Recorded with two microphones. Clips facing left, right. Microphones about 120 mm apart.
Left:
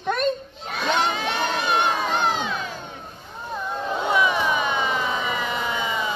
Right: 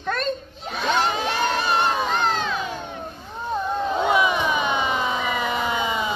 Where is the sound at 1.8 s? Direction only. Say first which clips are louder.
Right 1 dB; 15° left (ahead or behind).